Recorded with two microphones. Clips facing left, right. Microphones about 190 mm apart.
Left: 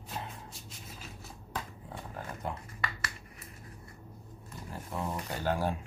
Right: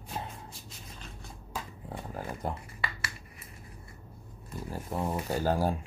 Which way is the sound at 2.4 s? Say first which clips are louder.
Right 2 dB; 35° right (ahead or behind).